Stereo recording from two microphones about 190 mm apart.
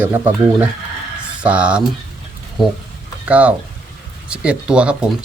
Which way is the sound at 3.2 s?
5° right (ahead or behind).